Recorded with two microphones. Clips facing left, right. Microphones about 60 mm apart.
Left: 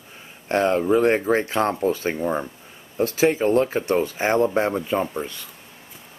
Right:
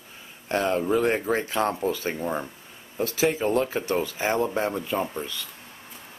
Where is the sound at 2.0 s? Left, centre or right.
Centre.